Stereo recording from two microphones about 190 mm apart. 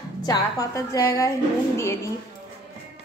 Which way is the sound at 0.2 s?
20° left (ahead or behind).